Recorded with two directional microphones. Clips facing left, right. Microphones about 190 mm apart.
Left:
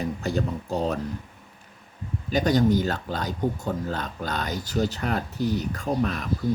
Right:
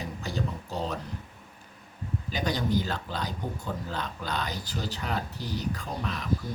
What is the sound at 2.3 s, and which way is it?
Speech, 45° left (ahead or behind).